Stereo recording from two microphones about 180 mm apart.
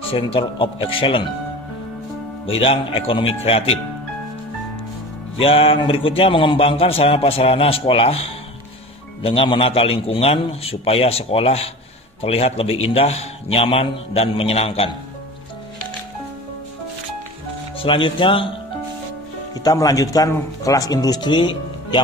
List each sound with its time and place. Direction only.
0.1 s speech: 30° left (ahead or behind)
2.4 s a man's voice: 30° left (ahead or behind)
5.4 s a man's voice: 30° left (ahead or behind)
17.8 s speech: 30° left (ahead or behind)
19.5 s speech: 20° left (ahead or behind)